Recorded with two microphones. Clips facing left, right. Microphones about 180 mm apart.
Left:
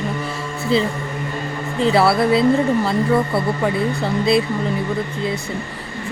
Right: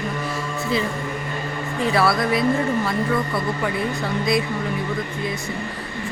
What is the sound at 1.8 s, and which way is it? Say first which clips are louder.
Speech: left 5 dB; 25° left (ahead or behind).